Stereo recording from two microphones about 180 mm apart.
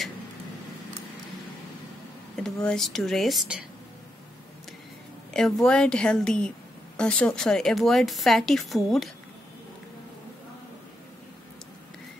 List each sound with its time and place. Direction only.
2.3 s a woman's voice: 5° left (ahead or behind)
5.3 s a woman's voice: 5° left (ahead or behind)